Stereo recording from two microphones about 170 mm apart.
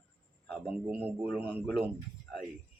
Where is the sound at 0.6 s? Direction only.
10° right (ahead or behind).